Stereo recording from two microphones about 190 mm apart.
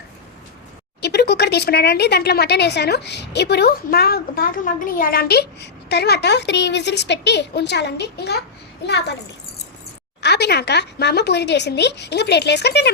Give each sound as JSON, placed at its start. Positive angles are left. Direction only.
{"t": 1.0, "sound": "speech", "side_deg": 60}
{"t": 10.2, "sound": "speech", "side_deg": 60}